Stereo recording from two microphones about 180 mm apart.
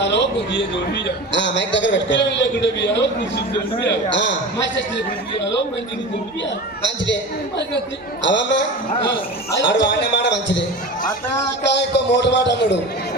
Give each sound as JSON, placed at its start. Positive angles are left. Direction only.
{"t": 0.0, "sound": "a sound", "side_deg": 80}
{"t": 0.5, "sound": "a man's voice", "side_deg": 80}
{"t": 6.8, "sound": "a man's voice", "side_deg": 85}
{"t": 8.2, "sound": "a man's voice", "side_deg": 85}
{"t": 11.7, "sound": "a man's voice", "side_deg": 75}